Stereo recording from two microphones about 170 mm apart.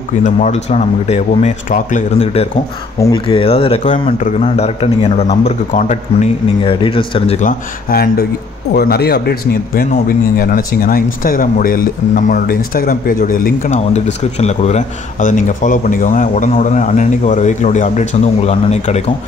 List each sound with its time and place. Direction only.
0.2 s a man's voice: 40° left (ahead or behind)
3.0 s a man's voice: 30° left (ahead or behind); by 5.9 s 45° left (ahead or behind)
6.6 s a man's voice: 30° left (ahead or behind)
7.4 s speech: 65° left (ahead or behind); by 19.1 s 40° left (ahead or behind)